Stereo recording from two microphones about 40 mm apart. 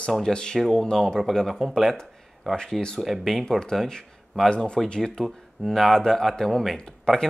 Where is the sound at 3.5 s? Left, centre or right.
Centre.